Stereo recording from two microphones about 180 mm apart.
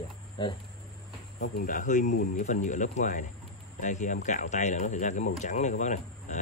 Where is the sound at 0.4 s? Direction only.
25° left (ahead or behind).